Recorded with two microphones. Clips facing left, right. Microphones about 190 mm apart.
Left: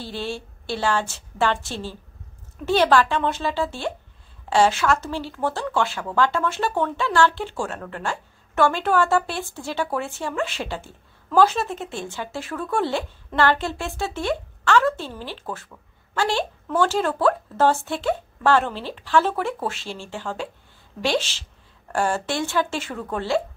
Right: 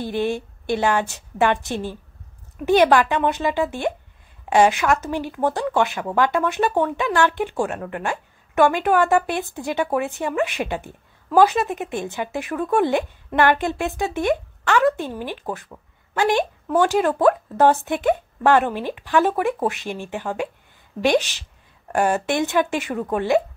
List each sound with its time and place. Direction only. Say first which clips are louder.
0.0 s speech: right 7 dB; 20° right (ahead or behind)